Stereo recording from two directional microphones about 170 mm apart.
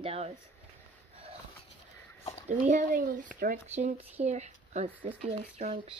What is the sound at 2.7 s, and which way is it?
Speech, 50° right (ahead or behind).